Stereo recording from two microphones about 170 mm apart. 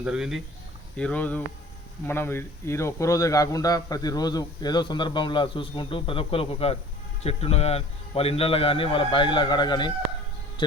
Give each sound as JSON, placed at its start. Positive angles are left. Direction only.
{"t": 0.0, "sound": "speech", "side_deg": -5}
{"t": 0.9, "sound": "a man's voice", "side_deg": 5}